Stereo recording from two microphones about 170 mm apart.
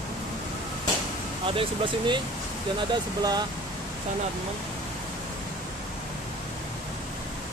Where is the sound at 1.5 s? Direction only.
30° right (ahead or behind).